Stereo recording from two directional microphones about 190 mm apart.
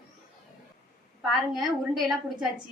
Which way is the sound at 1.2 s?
Centre (ahead or behind).